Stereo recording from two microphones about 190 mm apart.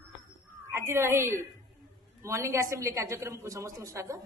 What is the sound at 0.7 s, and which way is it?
A woman's voice, 15° right (ahead or behind).